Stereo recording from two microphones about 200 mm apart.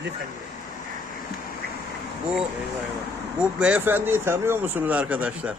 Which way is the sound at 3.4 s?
5° right (ahead or behind).